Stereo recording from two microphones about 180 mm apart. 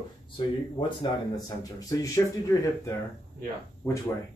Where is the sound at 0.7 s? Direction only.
25° left (ahead or behind).